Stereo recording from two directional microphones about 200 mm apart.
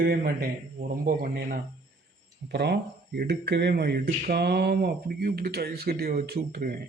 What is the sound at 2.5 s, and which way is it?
Speech, 55° right (ahead or behind).